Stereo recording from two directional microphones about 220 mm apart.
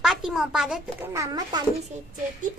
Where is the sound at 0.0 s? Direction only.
Centre (ahead or behind).